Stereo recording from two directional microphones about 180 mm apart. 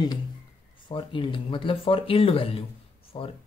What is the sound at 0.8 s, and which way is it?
Speech, 25° left (ahead or behind).